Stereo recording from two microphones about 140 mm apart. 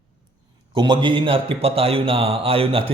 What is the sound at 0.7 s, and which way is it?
A man's voice, 35° right (ahead or behind).